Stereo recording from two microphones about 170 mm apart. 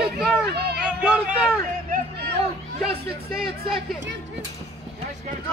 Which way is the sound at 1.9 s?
70° right (ahead or behind).